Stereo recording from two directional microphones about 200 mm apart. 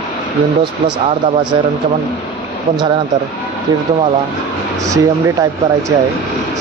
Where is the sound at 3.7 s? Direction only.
20° right (ahead or behind).